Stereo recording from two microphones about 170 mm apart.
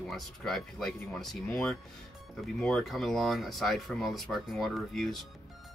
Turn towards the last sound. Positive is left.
turn(degrees=0)  # may be behind; listen again after turning